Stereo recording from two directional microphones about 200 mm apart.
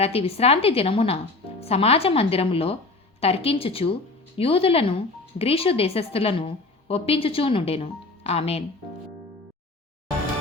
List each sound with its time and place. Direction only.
0.0 s speech: 30° left (ahead or behind)